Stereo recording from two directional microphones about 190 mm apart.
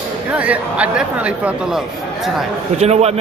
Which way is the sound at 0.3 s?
5° right (ahead or behind).